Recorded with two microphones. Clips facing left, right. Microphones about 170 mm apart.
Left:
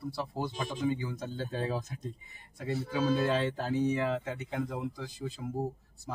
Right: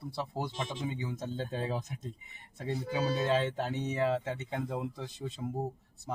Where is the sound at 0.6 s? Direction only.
25° right (ahead or behind).